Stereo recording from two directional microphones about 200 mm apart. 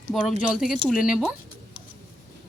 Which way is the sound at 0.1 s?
5° left (ahead or behind).